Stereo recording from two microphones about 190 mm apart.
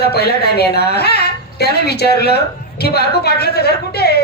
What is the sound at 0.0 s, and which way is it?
A woman's voice, 55° left (ahead or behind).